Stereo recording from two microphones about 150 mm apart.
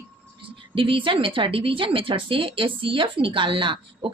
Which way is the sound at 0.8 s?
35° right (ahead or behind).